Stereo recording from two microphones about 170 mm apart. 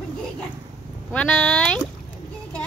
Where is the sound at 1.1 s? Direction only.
5° left (ahead or behind).